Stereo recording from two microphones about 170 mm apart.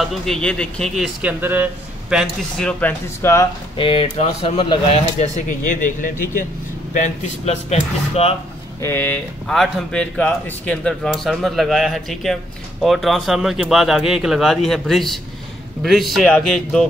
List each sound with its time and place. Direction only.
0.0 s speech: centre (ahead or behind)
1.4 s a man's voice: 10° right (ahead or behind)
2.8 s speech: 15° left (ahead or behind)
3.7 s speech: 30° left (ahead or behind)
8.8 s speech: 10° left (ahead or behind)